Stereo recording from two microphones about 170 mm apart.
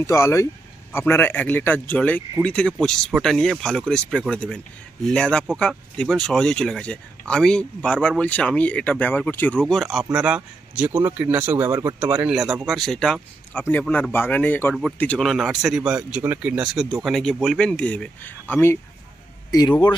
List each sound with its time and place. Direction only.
0.0 s speech: 15° left (ahead or behind)